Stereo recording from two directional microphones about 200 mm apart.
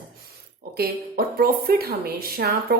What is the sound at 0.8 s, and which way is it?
Speech, 50° right (ahead or behind).